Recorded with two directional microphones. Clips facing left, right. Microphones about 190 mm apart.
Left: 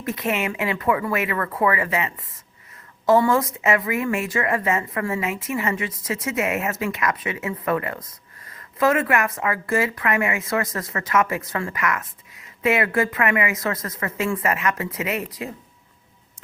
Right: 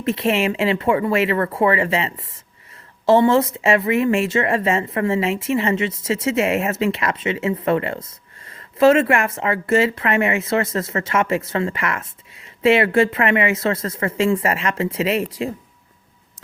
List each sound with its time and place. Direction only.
0.0 s speech: 25° right (ahead or behind)